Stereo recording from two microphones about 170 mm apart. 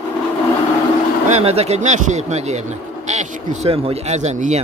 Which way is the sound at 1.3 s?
35° right (ahead or behind).